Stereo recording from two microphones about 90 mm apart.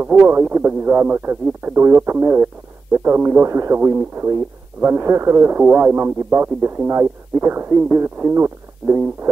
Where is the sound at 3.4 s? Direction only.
30° right (ahead or behind).